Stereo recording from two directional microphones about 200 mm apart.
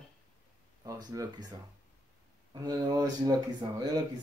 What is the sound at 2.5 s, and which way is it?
Speech, 20° right (ahead or behind).